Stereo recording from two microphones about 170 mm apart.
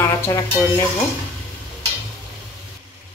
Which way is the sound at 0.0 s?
15° left (ahead or behind).